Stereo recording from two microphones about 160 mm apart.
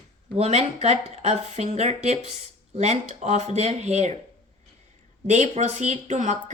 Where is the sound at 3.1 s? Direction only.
45° right (ahead or behind).